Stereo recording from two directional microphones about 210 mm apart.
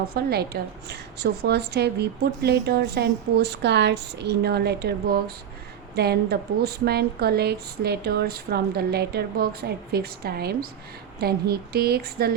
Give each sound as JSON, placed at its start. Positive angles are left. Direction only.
{"t": 0.0, "sound": "a woman's voice", "side_deg": -50}